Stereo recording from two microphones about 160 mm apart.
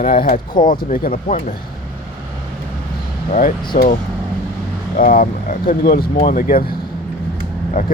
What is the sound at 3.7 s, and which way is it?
Speech, 60° left (ahead or behind).